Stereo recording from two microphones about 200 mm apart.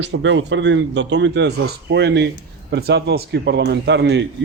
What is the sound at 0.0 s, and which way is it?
A man's voice, 65° right (ahead or behind).